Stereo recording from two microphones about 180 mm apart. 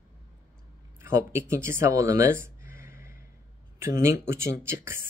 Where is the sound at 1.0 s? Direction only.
15° right (ahead or behind).